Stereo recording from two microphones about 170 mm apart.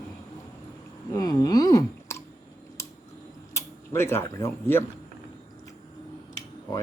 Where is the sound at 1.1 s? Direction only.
25° left (ahead or behind).